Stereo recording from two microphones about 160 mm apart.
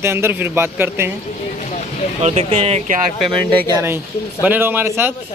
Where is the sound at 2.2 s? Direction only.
40° right (ahead or behind).